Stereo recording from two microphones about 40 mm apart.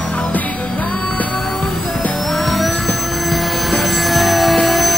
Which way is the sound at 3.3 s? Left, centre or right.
Centre.